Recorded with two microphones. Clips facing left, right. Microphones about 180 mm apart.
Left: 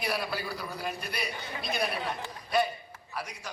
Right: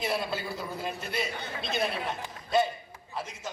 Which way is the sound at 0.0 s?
25° right (ahead or behind).